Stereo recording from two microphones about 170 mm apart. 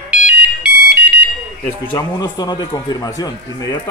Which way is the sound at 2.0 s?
20° left (ahead or behind).